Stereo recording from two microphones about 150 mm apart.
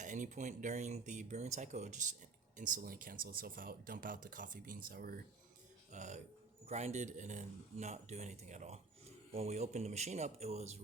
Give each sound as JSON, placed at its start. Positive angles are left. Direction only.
{"t": 0.0, "sound": "speech", "side_deg": -55}
{"t": 5.9, "sound": "speech", "side_deg": -50}